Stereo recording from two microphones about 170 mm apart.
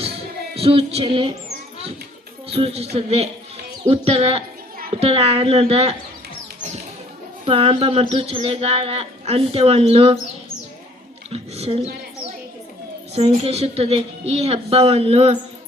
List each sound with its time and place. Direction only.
0.5 s a woman's voice: 35° right (ahead or behind)
2.5 s a woman's voice: 35° right (ahead or behind)
7.4 s a woman's voice: 35° right (ahead or behind)
11.3 s a woman's voice: 35° right (ahead or behind)
13.1 s a woman's voice: 40° right (ahead or behind)